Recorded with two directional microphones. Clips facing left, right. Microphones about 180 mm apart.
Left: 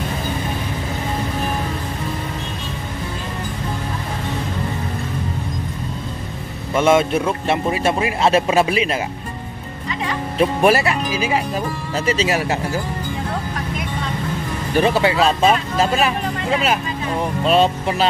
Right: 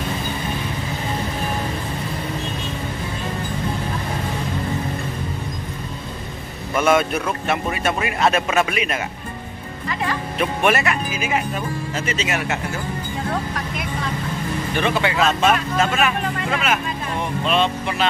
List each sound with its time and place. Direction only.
6.7 s a man's voice: 25° left (ahead or behind)
10.3 s speech: 30° left (ahead or behind)
14.8 s speech: 35° left (ahead or behind)